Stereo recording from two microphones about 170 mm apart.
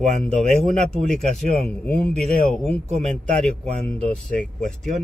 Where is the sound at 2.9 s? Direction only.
40° right (ahead or behind).